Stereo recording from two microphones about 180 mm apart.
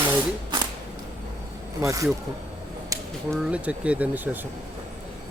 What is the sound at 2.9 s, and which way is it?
Whip, 20° right (ahead or behind).